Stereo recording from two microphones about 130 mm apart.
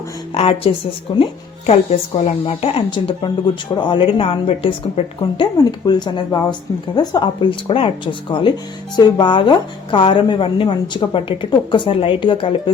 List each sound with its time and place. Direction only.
0.3 s a woman's voice: 50° left (ahead or behind)
1.6 s a woman's voice: 55° left (ahead or behind)
5.2 s a woman's voice: 35° left (ahead or behind)
7.7 s a woman's voice: 45° left (ahead or behind)